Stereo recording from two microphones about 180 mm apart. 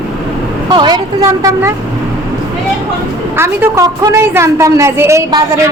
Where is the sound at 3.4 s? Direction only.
15° right (ahead or behind).